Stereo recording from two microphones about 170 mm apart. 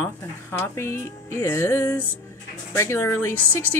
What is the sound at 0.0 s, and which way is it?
Speech, 10° left (ahead or behind).